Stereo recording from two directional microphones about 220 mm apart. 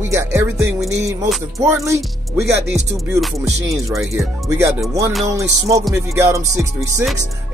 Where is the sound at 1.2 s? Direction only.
Centre (ahead or behind).